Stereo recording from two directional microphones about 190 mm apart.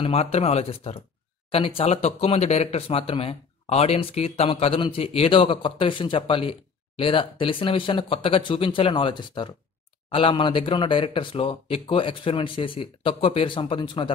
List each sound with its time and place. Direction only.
0.0 s a man's voice: 35° left (ahead or behind)